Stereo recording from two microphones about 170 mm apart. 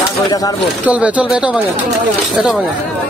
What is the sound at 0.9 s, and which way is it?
Speech, 10° right (ahead or behind).